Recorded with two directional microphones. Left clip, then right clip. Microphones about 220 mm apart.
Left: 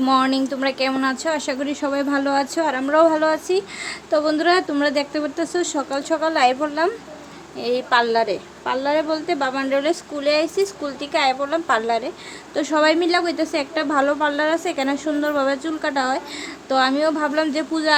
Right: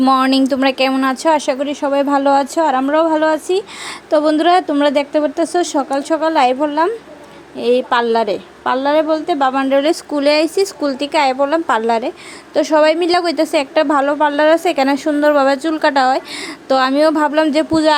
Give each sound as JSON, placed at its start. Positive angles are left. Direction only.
{"t": 0.0, "sound": "a woman's voice", "side_deg": -35}